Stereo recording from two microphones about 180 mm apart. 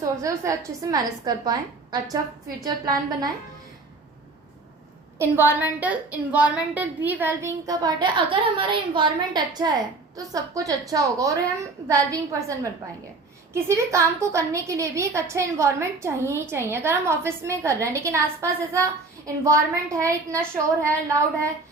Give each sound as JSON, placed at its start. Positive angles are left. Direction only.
{"t": 0.0, "sound": "a woman's voice", "side_deg": -15}
{"t": 5.2, "sound": "a woman's voice", "side_deg": -10}